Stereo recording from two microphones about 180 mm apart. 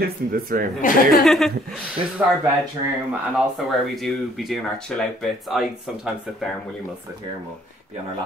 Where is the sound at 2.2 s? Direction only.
10° right (ahead or behind).